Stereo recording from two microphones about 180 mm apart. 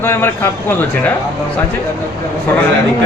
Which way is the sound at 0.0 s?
15° left (ahead or behind).